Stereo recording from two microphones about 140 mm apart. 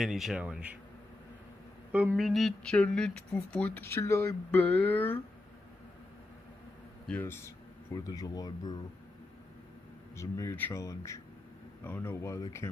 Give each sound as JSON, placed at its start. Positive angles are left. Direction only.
{"t": 0.0, "sound": "speech", "side_deg": 0}
{"t": 1.9, "sound": "speech", "side_deg": -10}
{"t": 7.1, "sound": "speech", "side_deg": 15}
{"t": 10.1, "sound": "speech", "side_deg": 20}